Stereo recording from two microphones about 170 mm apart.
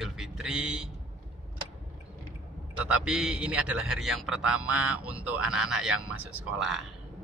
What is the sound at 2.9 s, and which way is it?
A man's voice, 5° right (ahead or behind).